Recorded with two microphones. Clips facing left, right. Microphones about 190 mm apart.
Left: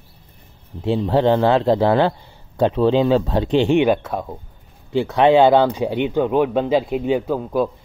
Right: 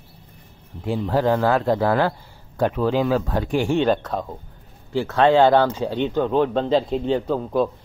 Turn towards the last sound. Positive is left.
turn(degrees=5)  # may be behind; listen again after turning